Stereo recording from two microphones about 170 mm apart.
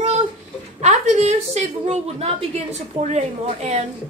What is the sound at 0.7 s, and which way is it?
A woman's voice, 40° right (ahead or behind).